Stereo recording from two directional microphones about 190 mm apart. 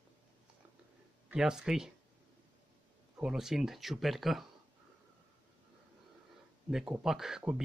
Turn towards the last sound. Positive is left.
turn(degrees=0)  # may be behind; listen again after turning